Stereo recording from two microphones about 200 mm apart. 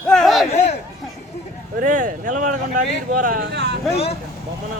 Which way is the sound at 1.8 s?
40° right (ahead or behind).